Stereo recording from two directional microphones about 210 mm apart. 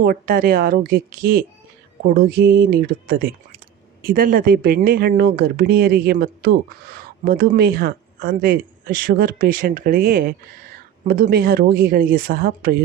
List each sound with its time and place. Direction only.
0.0 s speech: 45° right (ahead or behind)